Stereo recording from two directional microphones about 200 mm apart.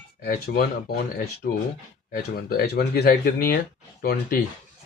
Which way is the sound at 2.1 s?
50° left (ahead or behind).